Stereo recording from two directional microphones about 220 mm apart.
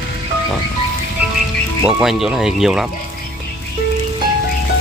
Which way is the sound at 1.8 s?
5° right (ahead or behind).